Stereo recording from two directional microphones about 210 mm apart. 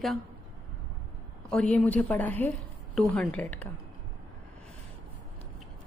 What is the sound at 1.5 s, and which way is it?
A woman's voice, 5° left (ahead or behind).